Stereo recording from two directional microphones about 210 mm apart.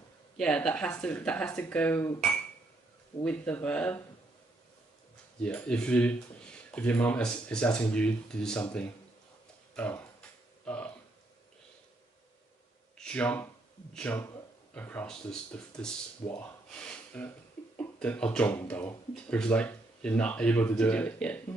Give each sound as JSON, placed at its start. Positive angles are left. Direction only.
{"t": 0.4, "sound": "speech", "side_deg": 5}
{"t": 5.4, "sound": "speech", "side_deg": 5}
{"t": 9.8, "sound": "speech", "side_deg": 5}
{"t": 10.6, "sound": "a sound", "side_deg": 5}
{"t": 12.9, "sound": "speech", "side_deg": 5}